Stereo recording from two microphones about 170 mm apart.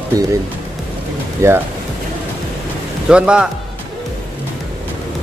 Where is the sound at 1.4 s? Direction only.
15° right (ahead or behind).